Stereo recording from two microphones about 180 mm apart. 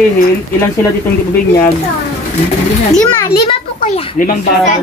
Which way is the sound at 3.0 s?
20° left (ahead or behind).